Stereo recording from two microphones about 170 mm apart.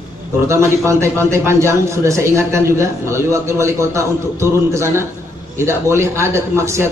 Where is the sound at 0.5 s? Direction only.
15° right (ahead or behind).